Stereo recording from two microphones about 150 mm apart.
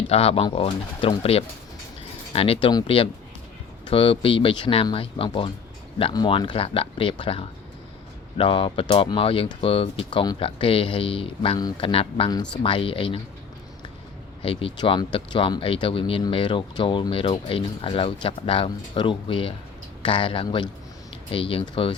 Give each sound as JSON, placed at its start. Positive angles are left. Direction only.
{"t": 0.1, "sound": "speech", "side_deg": 40}
{"t": 14.4, "sound": "speech", "side_deg": 35}